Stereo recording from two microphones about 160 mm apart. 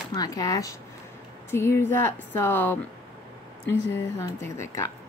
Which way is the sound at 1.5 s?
15° left (ahead or behind).